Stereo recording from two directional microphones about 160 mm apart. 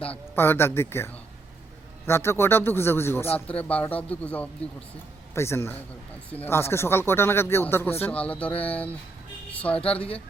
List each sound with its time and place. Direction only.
0.0 s a man's voice: 10° left (ahead or behind)